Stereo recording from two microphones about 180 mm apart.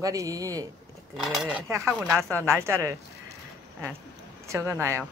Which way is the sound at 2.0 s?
Centre (ahead or behind).